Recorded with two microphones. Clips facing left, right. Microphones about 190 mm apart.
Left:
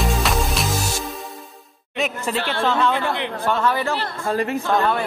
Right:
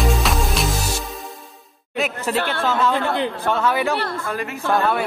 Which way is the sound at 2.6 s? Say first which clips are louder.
Left 1 dB; 5° right (ahead or behind).